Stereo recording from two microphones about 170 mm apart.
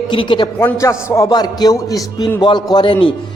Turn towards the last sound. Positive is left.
turn(degrees=30)  # may be behind; listen again after turning